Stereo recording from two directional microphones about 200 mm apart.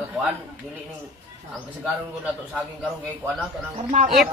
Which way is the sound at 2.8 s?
5° right (ahead or behind).